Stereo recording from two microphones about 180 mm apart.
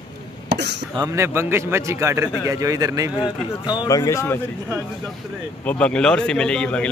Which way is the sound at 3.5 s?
20° left (ahead or behind).